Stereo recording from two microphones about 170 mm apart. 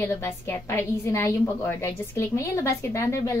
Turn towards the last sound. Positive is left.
turn(degrees=15)  # may be behind; listen again after turning